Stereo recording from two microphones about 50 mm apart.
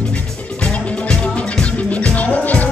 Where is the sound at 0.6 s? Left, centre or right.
Left.